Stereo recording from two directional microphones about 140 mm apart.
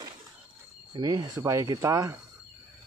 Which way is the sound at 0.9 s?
25° right (ahead or behind).